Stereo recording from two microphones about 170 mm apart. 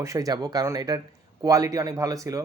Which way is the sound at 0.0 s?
20° right (ahead or behind).